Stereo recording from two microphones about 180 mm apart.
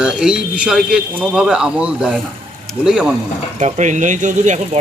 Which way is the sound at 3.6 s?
40° right (ahead or behind).